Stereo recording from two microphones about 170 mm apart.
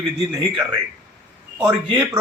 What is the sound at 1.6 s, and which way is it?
Speech, 15° right (ahead or behind).